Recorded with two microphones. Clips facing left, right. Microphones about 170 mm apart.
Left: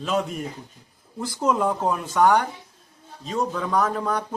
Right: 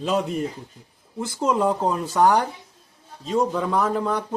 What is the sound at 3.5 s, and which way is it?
Speech, 5° right (ahead or behind).